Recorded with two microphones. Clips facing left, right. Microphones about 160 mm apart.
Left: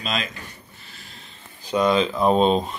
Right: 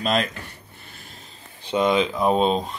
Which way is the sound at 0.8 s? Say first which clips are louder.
Right 1 dB; 50° right (ahead or behind).